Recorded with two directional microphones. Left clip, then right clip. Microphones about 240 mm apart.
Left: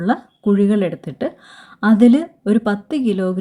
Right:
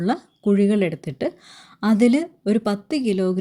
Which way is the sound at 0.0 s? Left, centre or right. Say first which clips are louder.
Left 4 dB; right.